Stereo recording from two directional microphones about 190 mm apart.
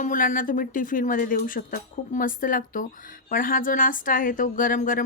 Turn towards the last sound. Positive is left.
turn(degrees=45)  # may be behind; listen again after turning